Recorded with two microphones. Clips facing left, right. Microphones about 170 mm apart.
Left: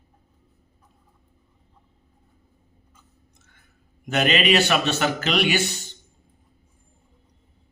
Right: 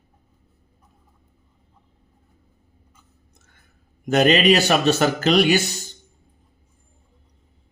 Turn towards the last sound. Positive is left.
turn(degrees=-40)  # may be behind; listen again after turning